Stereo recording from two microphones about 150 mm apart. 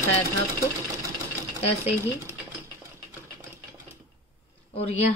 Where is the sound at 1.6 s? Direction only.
40° left (ahead or behind).